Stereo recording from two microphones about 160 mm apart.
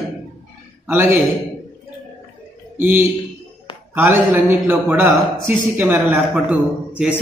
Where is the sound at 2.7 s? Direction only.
10° right (ahead or behind).